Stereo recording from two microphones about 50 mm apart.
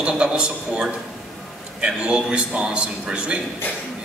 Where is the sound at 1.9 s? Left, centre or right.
Centre.